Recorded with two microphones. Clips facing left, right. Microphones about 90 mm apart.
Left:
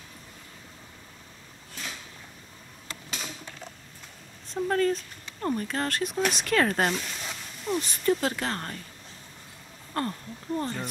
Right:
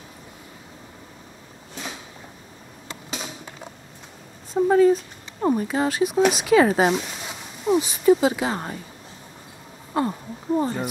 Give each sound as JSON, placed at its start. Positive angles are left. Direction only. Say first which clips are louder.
{"t": 4.6, "sound": "speech", "louder": "right 9 dB", "side_deg": -10}
{"t": 9.9, "sound": "speech", "louder": "right 7 dB", "side_deg": -10}